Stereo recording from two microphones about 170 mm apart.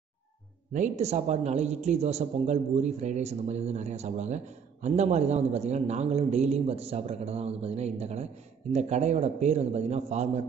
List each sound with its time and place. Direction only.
0.7 s speech: 45° right (ahead or behind)